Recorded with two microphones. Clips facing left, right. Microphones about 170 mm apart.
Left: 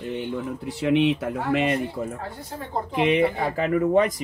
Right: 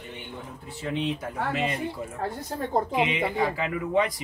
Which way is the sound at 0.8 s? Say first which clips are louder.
Left 9 dB; 80° left.